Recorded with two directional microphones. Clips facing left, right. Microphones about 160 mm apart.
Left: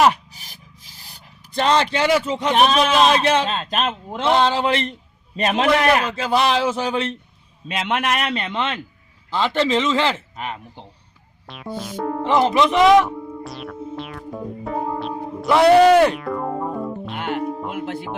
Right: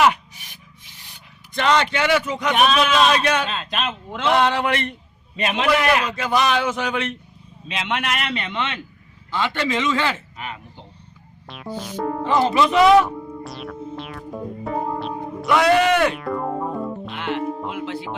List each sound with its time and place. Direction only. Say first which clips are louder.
0.0 s a sound: left 1 dB; 35° left (ahead or behind)
3.5 s a man's voice: left 3 dB; 40° left (ahead or behind)
4.2 s speech: left 1 dB; 30° left (ahead or behind)
5.4 s a man's voice: left 2 dB; 40° left (ahead or behind)
7.7 s a man's voice: left 3 dB; 40° left (ahead or behind)
10.3 s a sound: left 4 dB; 45° left (ahead or behind)
11.4 s music: left 1 dB; centre (ahead or behind)
12.2 s speech: left 2 dB; 20° left (ahead or behind)
13.0 s music: even; centre (ahead or behind)
15.4 s a man's voice: left 5 dB; 30° left (ahead or behind)
16.1 s music: even; centre (ahead or behind)
17.2 s speech: left 1 dB; 50° left (ahead or behind)
17.4 s music: even; centre (ahead or behind)
17.7 s speech: left 1 dB; 50° left (ahead or behind)